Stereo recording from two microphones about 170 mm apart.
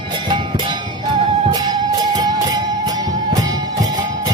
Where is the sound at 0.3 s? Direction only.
25° right (ahead or behind).